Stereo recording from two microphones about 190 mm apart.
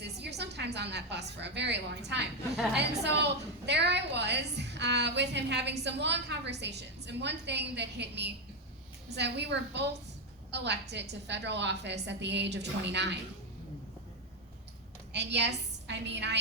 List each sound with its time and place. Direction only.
0.0 s a sound: 60° right (ahead or behind)
1.4 s a woman's voice: 65° right (ahead or behind)
15.1 s a woman's voice: 65° right (ahead or behind)